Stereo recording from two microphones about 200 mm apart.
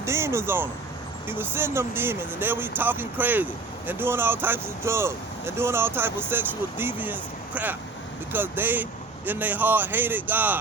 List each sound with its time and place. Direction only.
0.0 s speech: 15° right (ahead or behind)